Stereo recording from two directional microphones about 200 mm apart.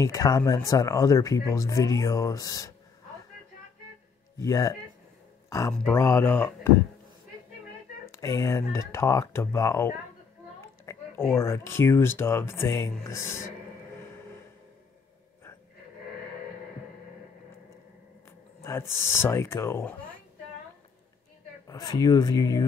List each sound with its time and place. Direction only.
0.0 s speech: 15° left (ahead or behind)
4.4 s speech: 15° left (ahead or behind)
8.1 s speech: 15° left (ahead or behind)
18.6 s speech: 10° left (ahead or behind)
21.6 s speech: 20° left (ahead or behind)